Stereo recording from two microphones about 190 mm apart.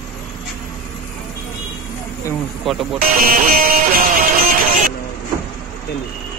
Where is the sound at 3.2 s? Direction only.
45° right (ahead or behind).